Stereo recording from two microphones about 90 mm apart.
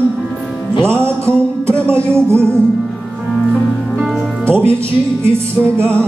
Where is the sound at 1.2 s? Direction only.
15° left (ahead or behind).